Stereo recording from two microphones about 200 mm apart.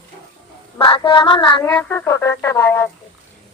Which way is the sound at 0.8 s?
25° left (ahead or behind).